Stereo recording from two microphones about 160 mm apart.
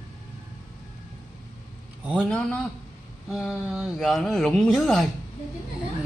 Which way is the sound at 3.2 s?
Centre (ahead or behind).